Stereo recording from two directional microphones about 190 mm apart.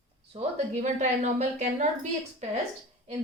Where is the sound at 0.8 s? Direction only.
35° right (ahead or behind).